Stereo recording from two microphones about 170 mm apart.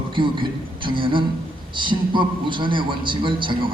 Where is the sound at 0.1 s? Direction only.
30° right (ahead or behind).